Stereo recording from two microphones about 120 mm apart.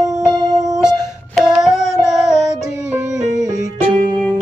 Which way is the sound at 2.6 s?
25° right (ahead or behind).